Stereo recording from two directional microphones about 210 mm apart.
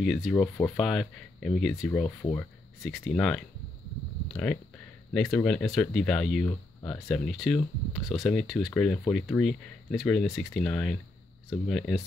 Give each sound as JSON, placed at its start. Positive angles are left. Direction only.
{"t": 0.0, "sound": "speech", "side_deg": 0}
{"t": 1.9, "sound": "speech", "side_deg": 10}
{"t": 2.8, "sound": "speech", "side_deg": 0}